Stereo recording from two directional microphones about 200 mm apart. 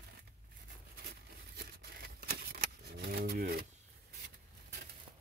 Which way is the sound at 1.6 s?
50° right (ahead or behind).